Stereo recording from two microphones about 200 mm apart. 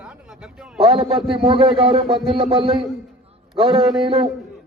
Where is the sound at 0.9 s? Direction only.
25° right (ahead or behind).